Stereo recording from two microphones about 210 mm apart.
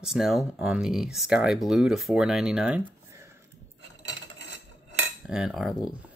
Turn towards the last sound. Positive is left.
turn(degrees=0)  # may be behind; listen again after turning